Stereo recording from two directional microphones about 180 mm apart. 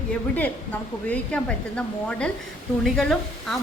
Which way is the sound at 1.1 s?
5° left (ahead or behind).